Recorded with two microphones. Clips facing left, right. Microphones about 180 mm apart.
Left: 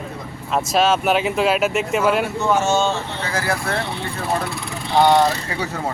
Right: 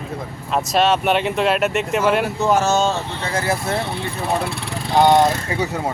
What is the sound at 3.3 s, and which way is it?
Speech, 25° right (ahead or behind).